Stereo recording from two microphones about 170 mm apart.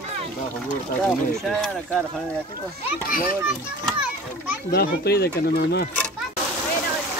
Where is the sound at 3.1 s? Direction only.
60° left (ahead or behind).